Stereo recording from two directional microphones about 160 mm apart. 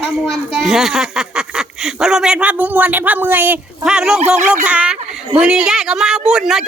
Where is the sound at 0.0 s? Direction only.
5° right (ahead or behind).